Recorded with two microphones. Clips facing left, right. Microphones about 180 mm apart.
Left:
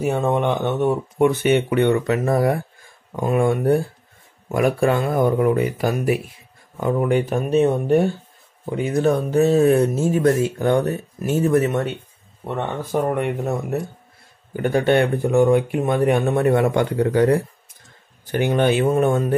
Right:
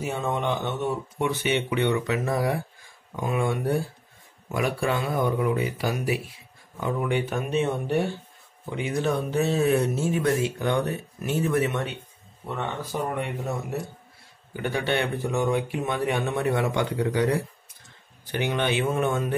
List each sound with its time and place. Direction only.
0.0 s speech: 55° left (ahead or behind)
12.4 s speech: 55° left (ahead or behind)